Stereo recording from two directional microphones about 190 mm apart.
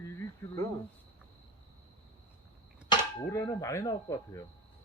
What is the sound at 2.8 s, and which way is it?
Speech, 15° left (ahead or behind).